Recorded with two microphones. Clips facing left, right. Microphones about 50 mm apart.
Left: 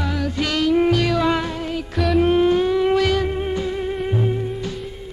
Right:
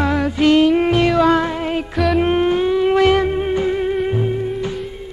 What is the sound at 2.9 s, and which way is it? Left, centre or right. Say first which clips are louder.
Music: right 5 dB; right.